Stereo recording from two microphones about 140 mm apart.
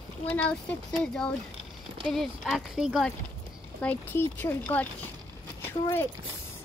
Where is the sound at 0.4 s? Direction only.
10° left (ahead or behind).